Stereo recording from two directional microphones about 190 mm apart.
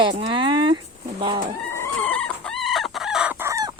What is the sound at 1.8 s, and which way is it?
Chicken, 10° left (ahead or behind).